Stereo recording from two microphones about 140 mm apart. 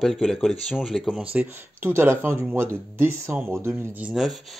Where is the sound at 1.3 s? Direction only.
15° right (ahead or behind).